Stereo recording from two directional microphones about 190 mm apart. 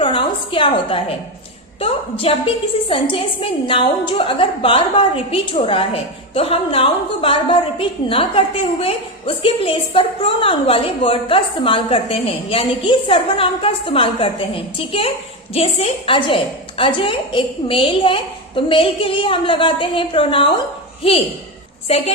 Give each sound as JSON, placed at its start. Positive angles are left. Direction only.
{"t": 0.0, "sound": "a sound", "side_deg": 25}
{"t": 1.8, "sound": "a woman's voice", "side_deg": 30}
{"t": 21.8, "sound": "a woman's voice", "side_deg": 30}